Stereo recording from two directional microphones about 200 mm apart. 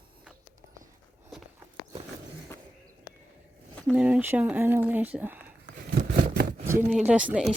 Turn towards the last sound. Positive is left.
turn(degrees=-5)  # may be behind; listen again after turning